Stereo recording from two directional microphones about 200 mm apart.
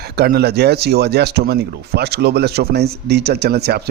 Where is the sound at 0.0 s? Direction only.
50° right (ahead or behind).